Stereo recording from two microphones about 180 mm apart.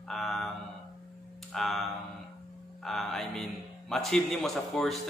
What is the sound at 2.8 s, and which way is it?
A man's voice, centre (ahead or behind).